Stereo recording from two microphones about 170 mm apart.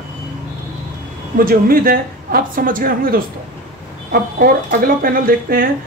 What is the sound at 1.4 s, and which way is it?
A woman's voice, 60° right (ahead or behind).